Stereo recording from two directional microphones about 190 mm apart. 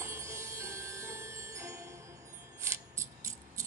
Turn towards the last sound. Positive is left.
turn(degrees=-15)  # may be behind; listen again after turning